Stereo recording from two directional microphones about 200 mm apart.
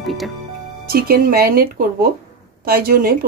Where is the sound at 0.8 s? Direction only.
50° right (ahead or behind).